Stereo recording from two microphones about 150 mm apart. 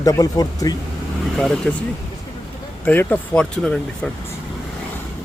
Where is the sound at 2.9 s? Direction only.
15° left (ahead or behind).